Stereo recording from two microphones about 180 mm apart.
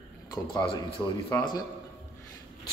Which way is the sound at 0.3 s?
20° left (ahead or behind).